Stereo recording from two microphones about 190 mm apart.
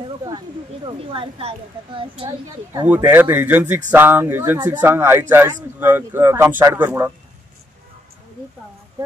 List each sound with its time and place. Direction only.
0.0 s a sound: 25° right (ahead or behind)
0.8 s speech: 30° right (ahead or behind)
2.2 s speech: 10° right (ahead or behind)